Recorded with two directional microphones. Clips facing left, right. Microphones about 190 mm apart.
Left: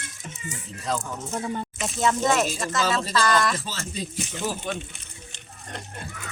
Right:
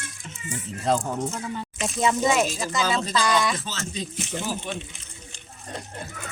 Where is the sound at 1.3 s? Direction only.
40° left (ahead or behind).